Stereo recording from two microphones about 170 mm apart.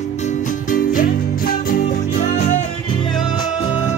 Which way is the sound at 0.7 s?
55° left (ahead or behind).